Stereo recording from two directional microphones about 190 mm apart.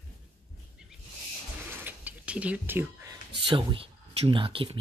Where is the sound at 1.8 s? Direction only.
10° right (ahead or behind).